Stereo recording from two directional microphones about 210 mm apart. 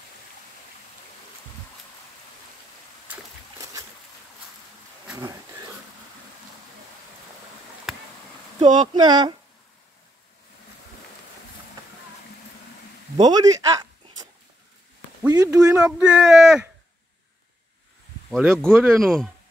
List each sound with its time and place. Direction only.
5.1 s a sound: 15° right (ahead or behind)
7.9 s a sound: centre (ahead or behind)
8.5 s speech: 20° right (ahead or behind)
13.2 s speech: 15° right (ahead or behind)
15.2 s speech: 15° right (ahead or behind)
15.6 s speech: 5° right (ahead or behind)
18.3 s speech: centre (ahead or behind)